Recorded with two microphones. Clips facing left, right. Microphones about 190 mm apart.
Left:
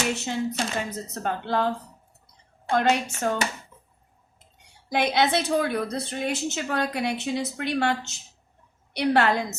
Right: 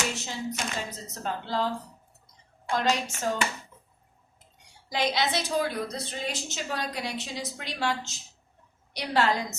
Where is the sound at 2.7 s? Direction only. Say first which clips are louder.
Left 4 dB; 55° left (ahead or behind).